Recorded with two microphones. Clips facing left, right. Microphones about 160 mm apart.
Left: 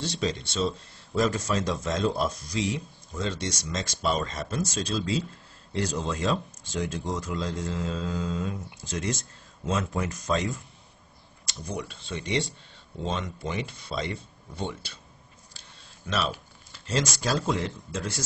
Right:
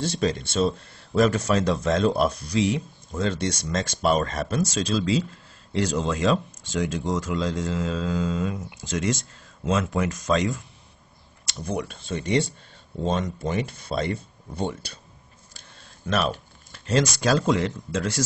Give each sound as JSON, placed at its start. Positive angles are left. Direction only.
{"t": 0.0, "sound": "speech", "side_deg": -50}
{"t": 11.4, "sound": "speech", "side_deg": -55}
{"t": 16.1, "sound": "speech", "side_deg": -55}